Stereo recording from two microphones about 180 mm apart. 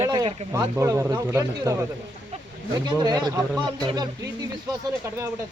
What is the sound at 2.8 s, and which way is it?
Speech, 20° right (ahead or behind).